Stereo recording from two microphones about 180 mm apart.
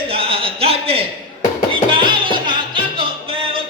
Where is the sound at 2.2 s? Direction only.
25° right (ahead or behind).